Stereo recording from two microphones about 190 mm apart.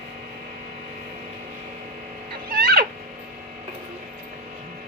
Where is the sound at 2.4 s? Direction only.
50° right (ahead or behind).